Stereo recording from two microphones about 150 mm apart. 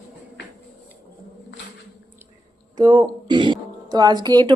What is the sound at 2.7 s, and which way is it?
Speech, 25° right (ahead or behind).